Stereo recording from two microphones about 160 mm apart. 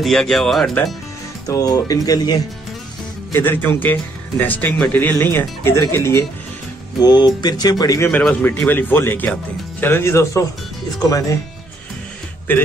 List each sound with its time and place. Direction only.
0.0 s speech: centre (ahead or behind)
1.5 s speech: 20° left (ahead or behind)
3.3 s speech: 15° left (ahead or behind)
8.1 s speech: 10° left (ahead or behind)